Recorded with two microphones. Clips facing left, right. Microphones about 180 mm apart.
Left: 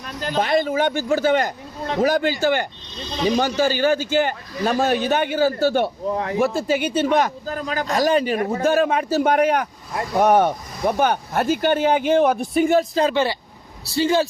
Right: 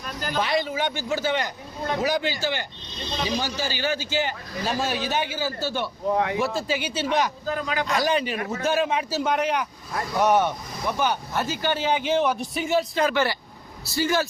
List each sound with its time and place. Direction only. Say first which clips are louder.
0.3 s speech: left 6 dB; 50° left (ahead or behind)
13.0 s speech: left 4 dB; 25° left (ahead or behind)